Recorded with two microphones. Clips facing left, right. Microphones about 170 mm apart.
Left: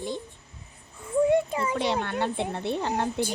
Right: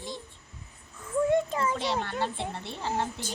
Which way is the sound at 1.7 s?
60° left (ahead or behind).